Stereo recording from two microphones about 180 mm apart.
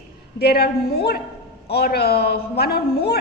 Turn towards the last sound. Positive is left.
turn(degrees=60)  # may be behind; listen again after turning